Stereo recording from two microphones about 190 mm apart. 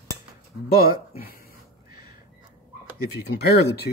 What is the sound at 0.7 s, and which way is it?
Speech, 50° left (ahead or behind).